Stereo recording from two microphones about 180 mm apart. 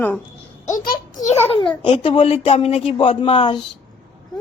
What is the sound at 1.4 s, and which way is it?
Speech, 30° left (ahead or behind).